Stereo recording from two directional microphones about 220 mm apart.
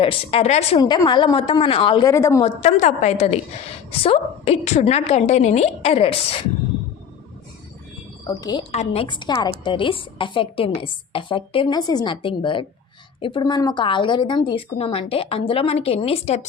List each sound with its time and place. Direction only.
0.0 s a woman's voice: 25° left (ahead or behind)
2.4 s a woman's voice: 30° left (ahead or behind)
8.3 s a woman's voice: 20° left (ahead or behind)
8.7 s a woman's voice: 30° left (ahead or behind)